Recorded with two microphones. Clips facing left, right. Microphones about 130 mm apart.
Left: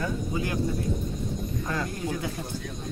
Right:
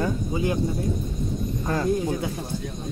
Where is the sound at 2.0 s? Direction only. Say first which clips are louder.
Right 4 dB; 25° right (ahead or behind).